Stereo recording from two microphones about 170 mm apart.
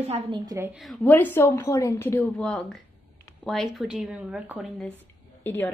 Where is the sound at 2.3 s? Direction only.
Centre (ahead or behind).